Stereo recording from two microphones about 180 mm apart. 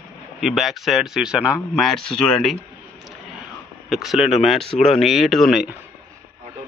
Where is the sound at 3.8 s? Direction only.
Centre (ahead or behind).